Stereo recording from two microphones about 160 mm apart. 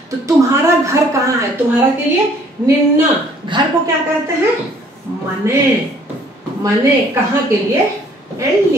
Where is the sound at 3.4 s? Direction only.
30° right (ahead or behind).